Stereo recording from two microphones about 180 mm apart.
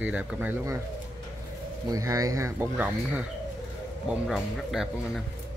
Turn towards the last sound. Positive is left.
turn(degrees=0)  # may be behind; listen again after turning